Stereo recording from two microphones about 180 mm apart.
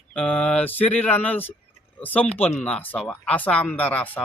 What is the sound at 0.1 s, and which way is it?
A man's voice, 5° left (ahead or behind).